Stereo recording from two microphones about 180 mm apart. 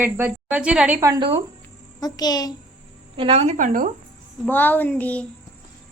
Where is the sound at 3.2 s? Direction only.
30° right (ahead or behind).